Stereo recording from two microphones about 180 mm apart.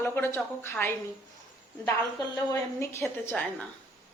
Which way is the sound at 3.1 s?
10° left (ahead or behind).